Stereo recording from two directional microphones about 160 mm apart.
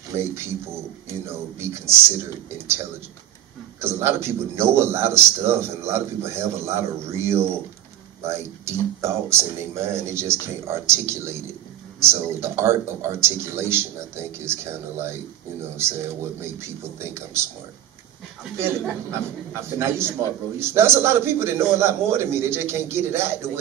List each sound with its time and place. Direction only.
0.1 s a man's voice: 15° right (ahead or behind)
3.8 s a man's voice: 15° right (ahead or behind)
17.0 s a man's voice: 15° right (ahead or behind)
19.8 s a man's voice: 15° right (ahead or behind)